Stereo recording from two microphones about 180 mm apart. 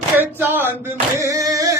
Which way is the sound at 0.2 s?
10° right (ahead or behind).